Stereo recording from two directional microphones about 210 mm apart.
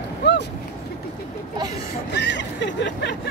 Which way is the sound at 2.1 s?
55° left (ahead or behind).